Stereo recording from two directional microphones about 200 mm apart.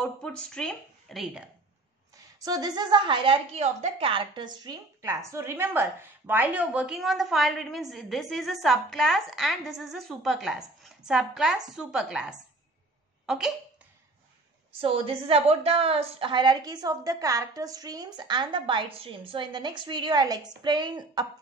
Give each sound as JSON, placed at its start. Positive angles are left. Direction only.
{"t": 0.0, "sound": "a woman's voice", "side_deg": 5}
{"t": 2.1, "sound": "a woman's voice", "side_deg": -20}
{"t": 14.8, "sound": "a woman's voice", "side_deg": -30}